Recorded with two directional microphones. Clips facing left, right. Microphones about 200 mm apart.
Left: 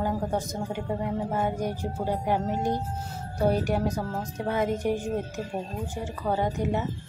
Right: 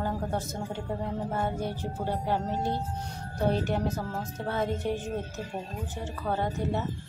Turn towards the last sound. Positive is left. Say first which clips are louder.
# left 3 dB
turn(degrees=15)  # may be behind; listen again after turning